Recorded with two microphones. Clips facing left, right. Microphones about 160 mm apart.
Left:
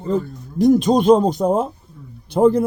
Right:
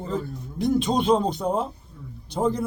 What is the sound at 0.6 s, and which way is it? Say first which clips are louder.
Speech: left 8 dB; 40° left (ahead or behind).